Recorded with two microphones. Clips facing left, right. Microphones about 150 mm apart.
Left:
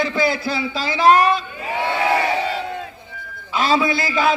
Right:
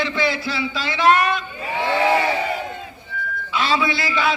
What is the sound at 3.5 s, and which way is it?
Speech, 45° left (ahead or behind).